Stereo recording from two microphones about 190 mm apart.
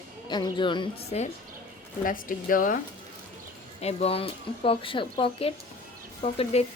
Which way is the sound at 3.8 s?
35° left (ahead or behind).